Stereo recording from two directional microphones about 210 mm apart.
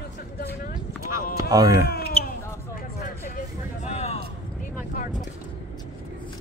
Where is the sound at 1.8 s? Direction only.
50° left (ahead or behind).